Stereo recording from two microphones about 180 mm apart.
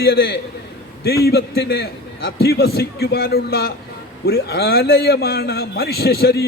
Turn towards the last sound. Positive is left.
turn(degrees=65)  # may be behind; listen again after turning